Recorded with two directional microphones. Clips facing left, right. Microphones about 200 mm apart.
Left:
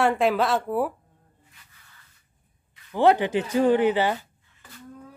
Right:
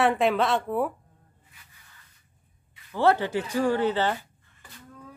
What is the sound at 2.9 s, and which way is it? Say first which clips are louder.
Speech: left 3 dB; 15° left (ahead or behind).